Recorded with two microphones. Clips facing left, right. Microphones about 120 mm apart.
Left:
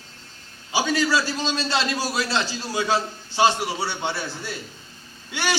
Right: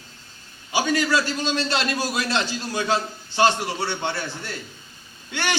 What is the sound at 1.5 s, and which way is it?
Speech, 20° left (ahead or behind).